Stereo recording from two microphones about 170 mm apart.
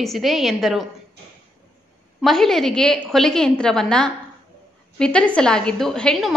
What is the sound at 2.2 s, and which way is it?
A woman's voice, centre (ahead or behind).